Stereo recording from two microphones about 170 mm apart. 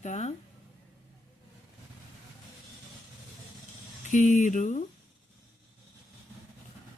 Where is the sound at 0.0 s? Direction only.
40° left (ahead or behind).